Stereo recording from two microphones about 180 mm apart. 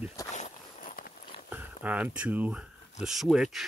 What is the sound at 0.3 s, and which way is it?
Walk, 45° left (ahead or behind).